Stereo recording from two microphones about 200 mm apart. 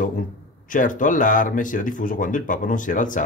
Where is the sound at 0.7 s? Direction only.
40° left (ahead or behind).